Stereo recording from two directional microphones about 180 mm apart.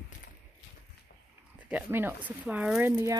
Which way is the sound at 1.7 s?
10° right (ahead or behind).